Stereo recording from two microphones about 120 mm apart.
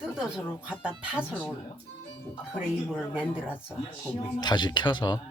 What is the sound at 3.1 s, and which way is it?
Speech, 10° right (ahead or behind).